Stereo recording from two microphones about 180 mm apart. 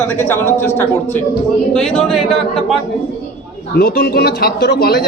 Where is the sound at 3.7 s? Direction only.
60° left (ahead or behind).